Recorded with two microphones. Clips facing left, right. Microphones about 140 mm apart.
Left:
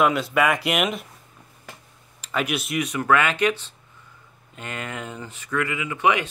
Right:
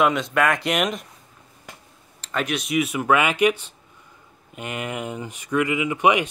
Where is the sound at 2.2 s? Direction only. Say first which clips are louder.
Even; 5° left (ahead or behind).